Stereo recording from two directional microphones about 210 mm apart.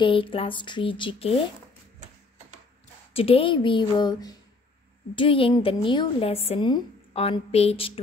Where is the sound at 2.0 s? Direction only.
35° right (ahead or behind).